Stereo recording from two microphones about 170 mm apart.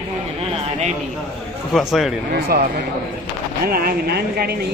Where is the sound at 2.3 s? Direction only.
65° right (ahead or behind).